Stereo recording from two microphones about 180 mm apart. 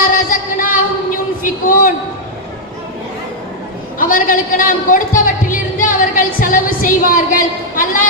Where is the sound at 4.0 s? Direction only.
50° left (ahead or behind).